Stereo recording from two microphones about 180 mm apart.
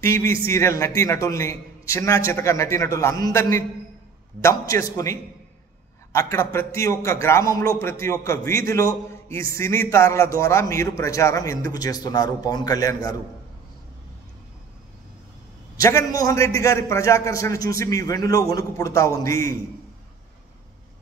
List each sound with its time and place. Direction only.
0.0 s a man's voice: 15° left (ahead or behind)
15.8 s a man's voice: 20° left (ahead or behind)